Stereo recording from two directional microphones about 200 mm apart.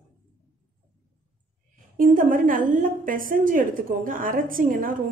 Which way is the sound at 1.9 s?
45° right (ahead or behind).